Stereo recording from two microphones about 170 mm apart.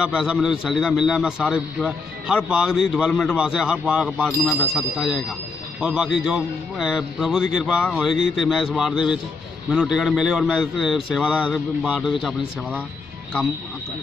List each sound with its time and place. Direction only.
0.0 s a man's voice: 5° right (ahead or behind)